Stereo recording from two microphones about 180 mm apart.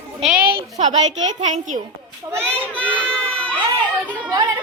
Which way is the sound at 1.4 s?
40° right (ahead or behind).